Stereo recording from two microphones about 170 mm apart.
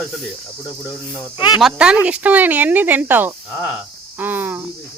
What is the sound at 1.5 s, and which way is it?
Speech, 5° right (ahead or behind).